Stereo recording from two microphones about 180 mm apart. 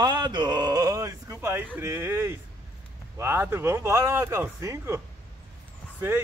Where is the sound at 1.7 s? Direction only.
15° right (ahead or behind).